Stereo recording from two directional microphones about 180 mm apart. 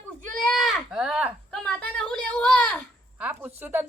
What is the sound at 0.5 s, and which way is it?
Speech, centre (ahead or behind).